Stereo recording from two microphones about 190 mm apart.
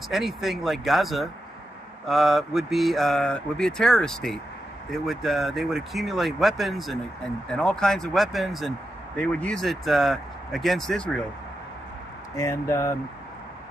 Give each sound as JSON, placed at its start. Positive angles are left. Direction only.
{"t": 0.1, "sound": "speech", "side_deg": 0}
{"t": 12.4, "sound": "speech", "side_deg": 15}